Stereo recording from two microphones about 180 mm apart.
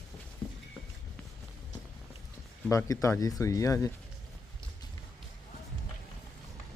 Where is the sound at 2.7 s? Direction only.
20° left (ahead or behind).